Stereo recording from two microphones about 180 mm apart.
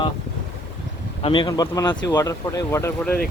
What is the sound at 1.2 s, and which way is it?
Speech, 25° left (ahead or behind).